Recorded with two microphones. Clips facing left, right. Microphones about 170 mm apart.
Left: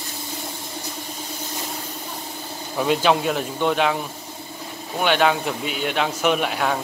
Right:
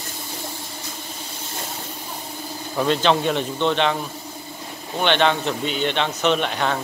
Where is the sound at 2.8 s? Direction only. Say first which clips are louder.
Even; 10° left (ahead or behind).